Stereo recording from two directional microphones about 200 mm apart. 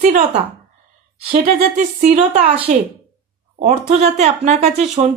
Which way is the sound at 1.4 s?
35° right (ahead or behind).